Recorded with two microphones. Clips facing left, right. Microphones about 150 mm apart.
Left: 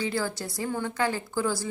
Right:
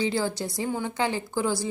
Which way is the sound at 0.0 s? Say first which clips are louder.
Right 3 dB; 25° right (ahead or behind).